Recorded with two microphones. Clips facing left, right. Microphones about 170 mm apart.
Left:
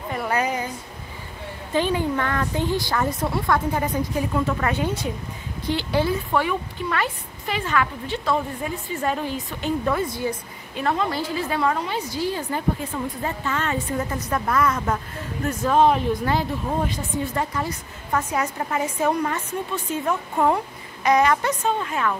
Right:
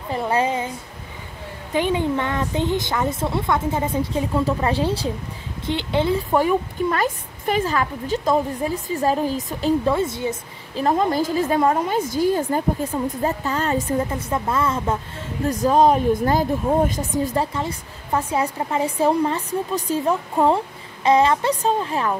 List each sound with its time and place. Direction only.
0.1 s a woman's voice: 30° right (ahead or behind)
6.3 s a woman's voice: 40° right (ahead or behind); by 10.3 s 25° right (ahead or behind)
10.8 s a woman's voice: 40° right (ahead or behind)
17.4 s speech: 30° right (ahead or behind)